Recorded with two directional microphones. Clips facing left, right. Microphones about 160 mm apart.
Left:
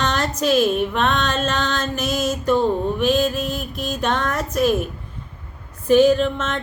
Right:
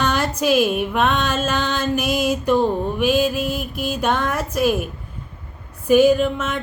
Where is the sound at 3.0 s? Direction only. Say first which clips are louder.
Right 3 dB; 10° right (ahead or behind).